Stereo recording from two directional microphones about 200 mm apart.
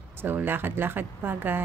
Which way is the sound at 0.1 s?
10° right (ahead or behind).